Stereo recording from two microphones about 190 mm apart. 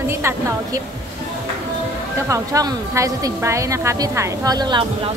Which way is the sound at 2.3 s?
15° right (ahead or behind).